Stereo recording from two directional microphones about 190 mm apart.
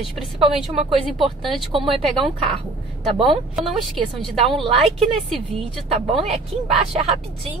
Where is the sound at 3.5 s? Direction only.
Centre (ahead or behind).